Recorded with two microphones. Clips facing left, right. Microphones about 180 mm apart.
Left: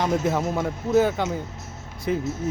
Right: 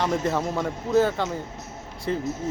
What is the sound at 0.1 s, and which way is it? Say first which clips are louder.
Speech: left 2 dB; 10° left (ahead or behind).